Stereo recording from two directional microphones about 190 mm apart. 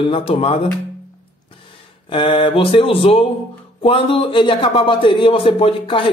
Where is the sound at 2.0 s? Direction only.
25° left (ahead or behind).